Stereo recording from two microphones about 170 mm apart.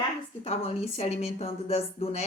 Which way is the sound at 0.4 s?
40° left (ahead or behind).